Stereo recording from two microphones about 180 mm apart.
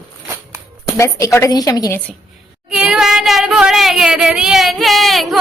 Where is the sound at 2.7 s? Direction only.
5° right (ahead or behind).